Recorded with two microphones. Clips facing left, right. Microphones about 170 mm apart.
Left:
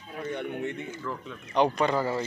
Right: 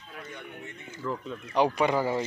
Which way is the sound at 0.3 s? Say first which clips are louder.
Left 14 dB; 65° left (ahead or behind).